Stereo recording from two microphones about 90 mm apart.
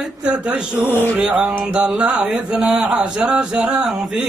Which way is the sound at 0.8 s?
20° left (ahead or behind).